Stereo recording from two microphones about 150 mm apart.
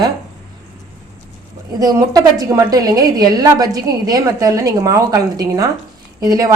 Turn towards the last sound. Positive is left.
turn(degrees=-25)  # may be behind; listen again after turning